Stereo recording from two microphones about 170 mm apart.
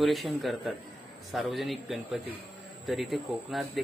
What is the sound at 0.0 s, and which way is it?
Speech, centre (ahead or behind).